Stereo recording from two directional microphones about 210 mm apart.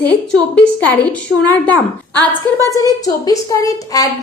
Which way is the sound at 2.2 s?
15° left (ahead or behind).